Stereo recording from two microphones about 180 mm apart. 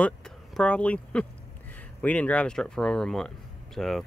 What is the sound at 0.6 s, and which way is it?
Speech, 5° left (ahead or behind).